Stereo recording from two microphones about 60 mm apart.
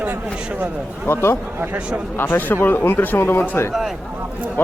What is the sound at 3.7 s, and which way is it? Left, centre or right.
Speech, centre.